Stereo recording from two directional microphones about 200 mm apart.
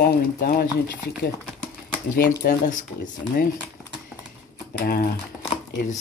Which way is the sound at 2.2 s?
40° left (ahead or behind).